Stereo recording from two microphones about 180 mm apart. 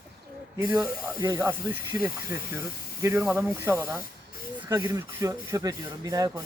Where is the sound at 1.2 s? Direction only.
15° right (ahead or behind).